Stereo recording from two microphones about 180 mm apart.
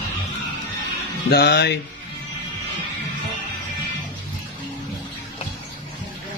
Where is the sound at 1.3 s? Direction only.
65° left (ahead or behind).